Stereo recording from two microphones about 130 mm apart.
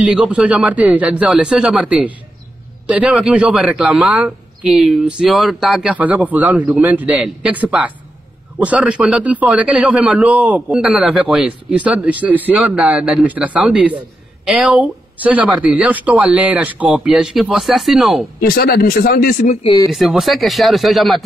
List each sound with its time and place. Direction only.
0.0 s a man's voice: 5° right (ahead or behind)
18.6 s speech: 90° left
19.9 s speech: centre (ahead or behind)